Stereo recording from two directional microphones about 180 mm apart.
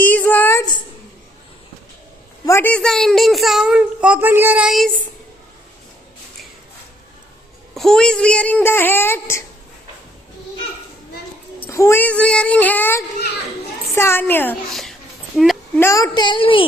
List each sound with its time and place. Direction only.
0.0 s a sound: 10° left (ahead or behind)
2.5 s a child's voice: 10° left (ahead or behind)
7.7 s speech: centre (ahead or behind)
11.6 s speech: 15° left (ahead or behind)
14.7 s a child's voice: centre (ahead or behind)
15.8 s a woman's voice: 15° left (ahead or behind)